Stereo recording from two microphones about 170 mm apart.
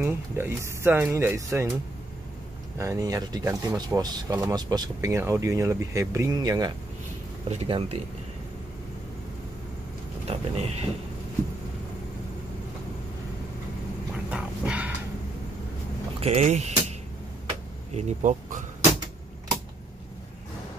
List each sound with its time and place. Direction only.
0.0 s speech: 15° right (ahead or behind)
2.8 s speech: 20° right (ahead or behind)
10.3 s speech: 40° right (ahead or behind)
14.3 s dog: 5° right (ahead or behind)
16.2 s speech: 40° right (ahead or behind)
17.9 s speech: 45° right (ahead or behind)